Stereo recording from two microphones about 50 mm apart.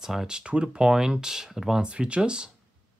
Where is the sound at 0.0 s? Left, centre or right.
Centre.